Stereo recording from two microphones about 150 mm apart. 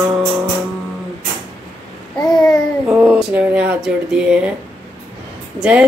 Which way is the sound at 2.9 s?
15° right (ahead or behind).